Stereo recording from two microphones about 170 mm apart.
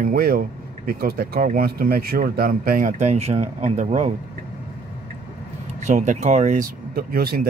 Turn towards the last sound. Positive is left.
turn(degrees=-60)  # may be behind; listen again after turning